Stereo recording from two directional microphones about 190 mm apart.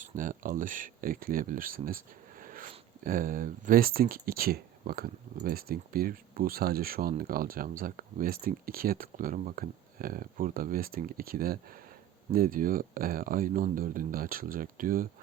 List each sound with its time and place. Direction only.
0.0 s speech: 45° right (ahead or behind)